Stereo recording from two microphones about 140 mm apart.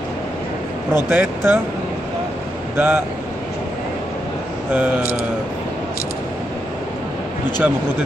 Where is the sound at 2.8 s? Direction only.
15° right (ahead or behind).